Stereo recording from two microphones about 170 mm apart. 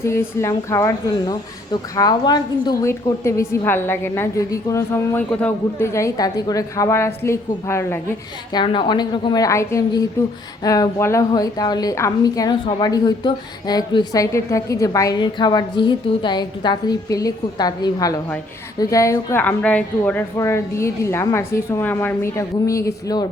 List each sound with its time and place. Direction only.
0.0 s a woman's voice: 15° left (ahead or behind)
8.5 s a woman's voice: 30° left (ahead or behind)